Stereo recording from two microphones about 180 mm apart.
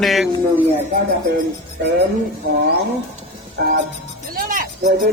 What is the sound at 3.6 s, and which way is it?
Music, 60° right (ahead or behind).